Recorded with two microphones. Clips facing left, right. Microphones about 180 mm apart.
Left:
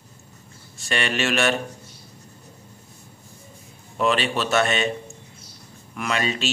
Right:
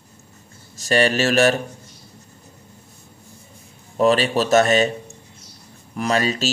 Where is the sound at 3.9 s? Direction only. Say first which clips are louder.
Right 5 dB; 40° right (ahead or behind).